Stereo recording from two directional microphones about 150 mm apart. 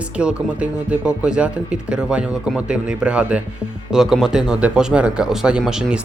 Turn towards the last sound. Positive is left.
turn(degrees=-5)  # may be behind; listen again after turning